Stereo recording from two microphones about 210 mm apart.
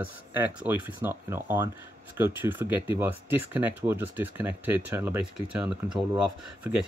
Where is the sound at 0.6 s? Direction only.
10° right (ahead or behind).